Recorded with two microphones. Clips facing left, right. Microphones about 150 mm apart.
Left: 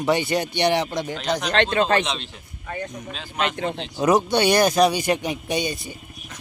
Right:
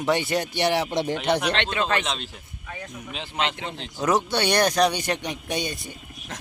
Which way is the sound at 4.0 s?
15° left (ahead or behind).